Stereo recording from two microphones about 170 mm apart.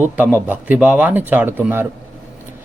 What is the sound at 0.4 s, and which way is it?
A man's voice, 10° right (ahead or behind).